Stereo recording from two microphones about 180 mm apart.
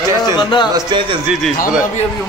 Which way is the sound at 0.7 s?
25° right (ahead or behind).